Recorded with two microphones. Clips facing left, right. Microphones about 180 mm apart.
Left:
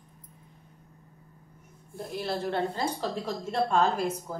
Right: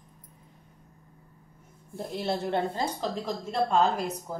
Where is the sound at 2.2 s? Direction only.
20° right (ahead or behind).